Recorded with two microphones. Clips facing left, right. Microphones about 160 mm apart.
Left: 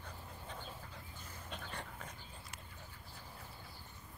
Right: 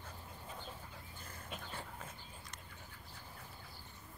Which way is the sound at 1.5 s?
5° right (ahead or behind).